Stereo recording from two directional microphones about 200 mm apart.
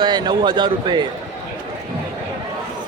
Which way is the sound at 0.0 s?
20° right (ahead or behind).